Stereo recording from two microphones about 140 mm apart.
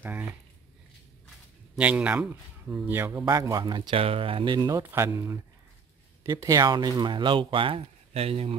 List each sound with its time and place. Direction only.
1.8 s speech: 10° right (ahead or behind); by 4.0 s 30° right (ahead or behind)
4.0 s speech: 40° right (ahead or behind)